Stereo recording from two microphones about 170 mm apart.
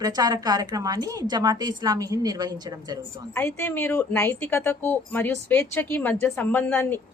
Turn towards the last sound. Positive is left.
turn(degrees=10)  # may be behind; listen again after turning